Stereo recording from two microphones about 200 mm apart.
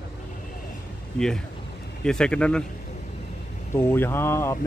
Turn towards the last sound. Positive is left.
turn(degrees=15)  # may be behind; listen again after turning